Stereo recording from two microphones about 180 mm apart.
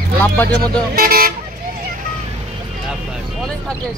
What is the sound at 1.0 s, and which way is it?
Speech, 55° right (ahead or behind).